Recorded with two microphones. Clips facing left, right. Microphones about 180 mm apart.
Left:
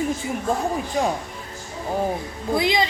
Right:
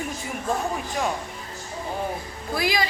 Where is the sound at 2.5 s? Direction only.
20° left (ahead or behind).